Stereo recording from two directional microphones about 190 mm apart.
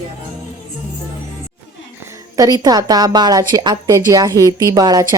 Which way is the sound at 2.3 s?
20° right (ahead or behind).